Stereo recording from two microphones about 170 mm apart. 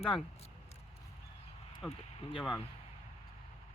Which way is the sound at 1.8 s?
Centre (ahead or behind).